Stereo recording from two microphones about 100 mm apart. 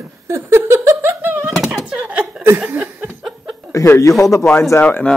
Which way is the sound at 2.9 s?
20° right (ahead or behind).